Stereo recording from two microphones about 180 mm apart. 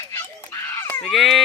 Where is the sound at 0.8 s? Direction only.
15° left (ahead or behind).